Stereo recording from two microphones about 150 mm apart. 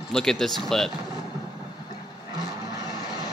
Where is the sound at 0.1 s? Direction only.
5° left (ahead or behind).